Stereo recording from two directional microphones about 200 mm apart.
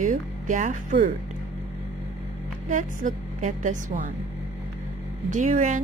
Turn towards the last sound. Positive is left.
turn(degrees=-40)  # may be behind; listen again after turning